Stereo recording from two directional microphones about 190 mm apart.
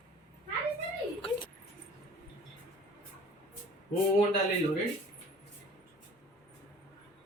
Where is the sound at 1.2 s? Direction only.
25° left (ahead or behind).